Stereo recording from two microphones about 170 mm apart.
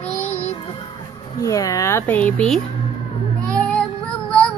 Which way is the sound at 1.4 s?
20° left (ahead or behind).